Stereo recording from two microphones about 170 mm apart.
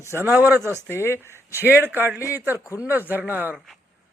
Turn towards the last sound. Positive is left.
turn(degrees=-10)  # may be behind; listen again after turning